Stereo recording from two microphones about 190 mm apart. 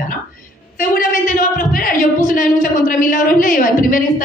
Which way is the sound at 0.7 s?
45° left (ahead or behind).